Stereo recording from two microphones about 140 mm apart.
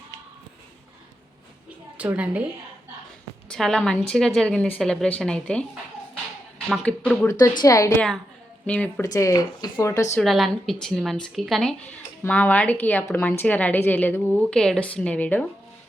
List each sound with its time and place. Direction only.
2.0 s a woman's voice: 10° right (ahead or behind)
3.5 s a woman's voice: 5° left (ahead or behind)
6.8 s a woman's voice: 10° left (ahead or behind)
7.3 s speech: 20° left (ahead or behind)
7.9 s a woman's voice: 5° left (ahead or behind)
9.0 s speech: 25° left (ahead or behind)
10.2 s a woman's voice: centre (ahead or behind)